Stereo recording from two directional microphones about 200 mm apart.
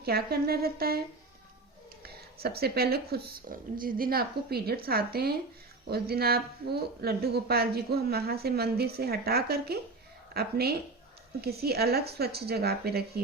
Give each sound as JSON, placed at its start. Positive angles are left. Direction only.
{"t": 0.0, "sound": "speech", "side_deg": -50}
{"t": 2.0, "sound": "speech", "side_deg": -50}